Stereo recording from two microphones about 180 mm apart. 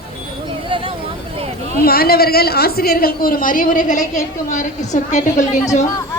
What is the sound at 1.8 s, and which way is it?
Speech, 55° left (ahead or behind).